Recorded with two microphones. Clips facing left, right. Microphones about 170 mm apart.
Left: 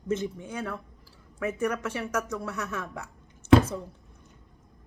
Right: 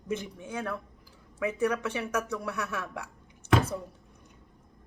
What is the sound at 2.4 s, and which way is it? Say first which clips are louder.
Speech: even; 15° right (ahead or behind).